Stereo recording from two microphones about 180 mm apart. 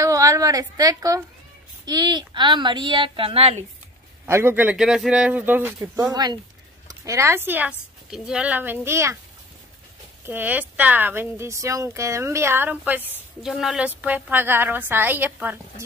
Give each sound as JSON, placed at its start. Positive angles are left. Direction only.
{"t": 0.0, "sound": "a woman's voice", "side_deg": -20}
{"t": 4.3, "sound": "speech", "side_deg": -10}
{"t": 10.2, "sound": "speech", "side_deg": -10}